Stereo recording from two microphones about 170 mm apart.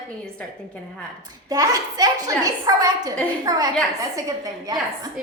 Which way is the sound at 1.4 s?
20° right (ahead or behind).